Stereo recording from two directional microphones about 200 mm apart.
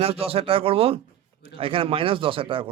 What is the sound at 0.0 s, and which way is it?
A man's voice, 30° right (ahead or behind).